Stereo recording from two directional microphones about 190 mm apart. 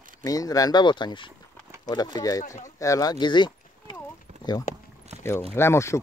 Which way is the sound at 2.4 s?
40° left (ahead or behind).